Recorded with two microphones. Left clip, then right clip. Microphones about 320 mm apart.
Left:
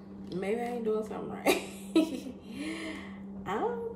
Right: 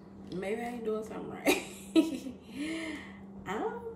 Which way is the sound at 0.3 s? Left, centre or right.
Centre.